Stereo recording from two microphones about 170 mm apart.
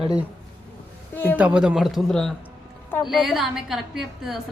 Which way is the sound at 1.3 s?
5° right (ahead or behind).